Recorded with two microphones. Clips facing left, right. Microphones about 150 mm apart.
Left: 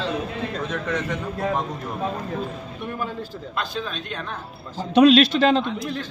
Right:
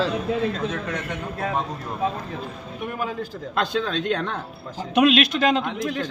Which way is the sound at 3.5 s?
85° right.